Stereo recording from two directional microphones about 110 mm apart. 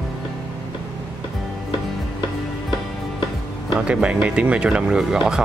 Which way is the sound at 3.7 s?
10° right (ahead or behind).